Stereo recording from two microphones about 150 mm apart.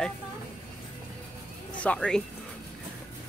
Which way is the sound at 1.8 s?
5° left (ahead or behind).